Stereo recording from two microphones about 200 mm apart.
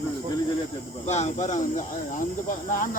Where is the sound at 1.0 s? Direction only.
35° left (ahead or behind).